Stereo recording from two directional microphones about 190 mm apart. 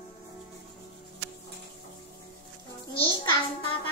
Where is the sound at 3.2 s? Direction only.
25° left (ahead or behind).